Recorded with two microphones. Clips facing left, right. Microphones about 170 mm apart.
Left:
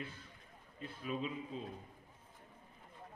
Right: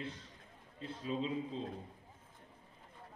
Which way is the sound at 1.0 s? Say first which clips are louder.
Right 3 dB; 25° right (ahead or behind).